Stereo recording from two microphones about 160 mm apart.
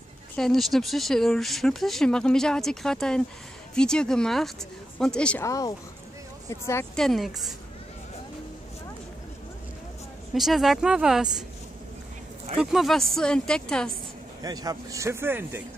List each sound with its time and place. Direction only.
0.4 s speech: centre (ahead or behind)
5.4 s speech: 20° left (ahead or behind)
7.0 s speech: centre (ahead or behind)
10.3 s speech: centre (ahead or behind)
12.5 s speech: centre (ahead or behind)
14.4 s speech: 25° right (ahead or behind)